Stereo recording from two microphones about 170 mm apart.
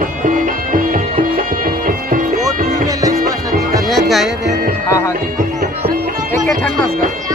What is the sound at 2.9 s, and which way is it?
Music, 20° right (ahead or behind).